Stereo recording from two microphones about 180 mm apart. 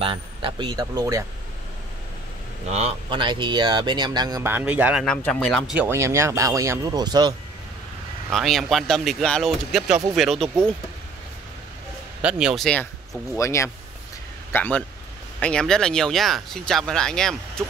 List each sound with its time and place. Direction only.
0.0 s speech: 30° right (ahead or behind)
2.7 s speech: 30° right (ahead or behind); by 5.0 s 10° right (ahead or behind)
5.0 s speech: 5° left (ahead or behind)
5.8 s speech: 15° right (ahead or behind)
8.3 s speech: centre (ahead or behind)
12.2 s speech: 5° right (ahead or behind)
13.4 s speech: 15° left (ahead or behind)